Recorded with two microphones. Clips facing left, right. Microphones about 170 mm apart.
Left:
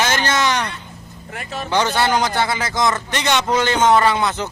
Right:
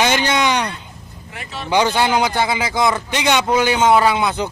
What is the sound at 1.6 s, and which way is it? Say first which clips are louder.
A man's voice: right 2 dB; 10° right (ahead or behind).